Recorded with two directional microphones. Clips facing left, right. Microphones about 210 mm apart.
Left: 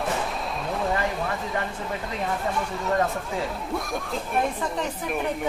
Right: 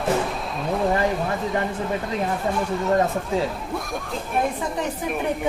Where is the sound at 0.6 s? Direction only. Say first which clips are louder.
Right 6 dB; centre (ahead or behind).